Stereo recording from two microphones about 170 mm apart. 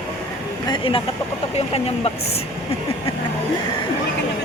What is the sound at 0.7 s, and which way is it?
Vehicle, 30° left (ahead or behind).